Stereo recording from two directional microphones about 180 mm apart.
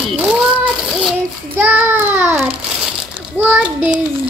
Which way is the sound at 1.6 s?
10° right (ahead or behind).